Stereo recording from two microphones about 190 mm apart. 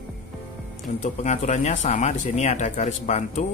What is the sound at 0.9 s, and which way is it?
Speech, 40° left (ahead or behind).